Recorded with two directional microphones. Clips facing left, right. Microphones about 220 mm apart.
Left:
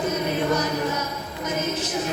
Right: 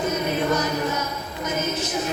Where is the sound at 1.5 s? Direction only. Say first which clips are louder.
Even; 30° left (ahead or behind).